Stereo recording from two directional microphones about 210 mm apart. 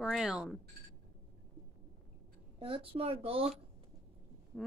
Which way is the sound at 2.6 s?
25° right (ahead or behind).